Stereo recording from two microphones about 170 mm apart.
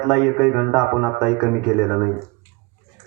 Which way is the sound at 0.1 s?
Centre (ahead or behind).